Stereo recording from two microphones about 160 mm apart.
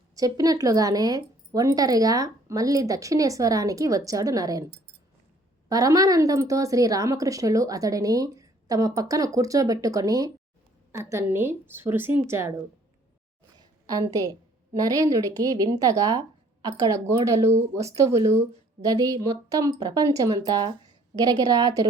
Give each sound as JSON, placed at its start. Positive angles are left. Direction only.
{"t": 0.2, "sound": "a woman's voice", "side_deg": -25}
{"t": 5.6, "sound": "a woman's voice", "side_deg": -20}
{"t": 13.8, "sound": "a woman's voice", "side_deg": -20}